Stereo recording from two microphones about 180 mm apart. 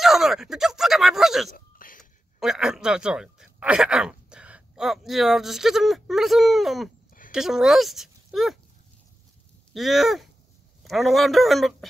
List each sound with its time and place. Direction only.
0.0 s speech: centre (ahead or behind)
1.5 s a sound: 50° left (ahead or behind)
2.4 s speech: 5° right (ahead or behind)
9.8 s speech: centre (ahead or behind)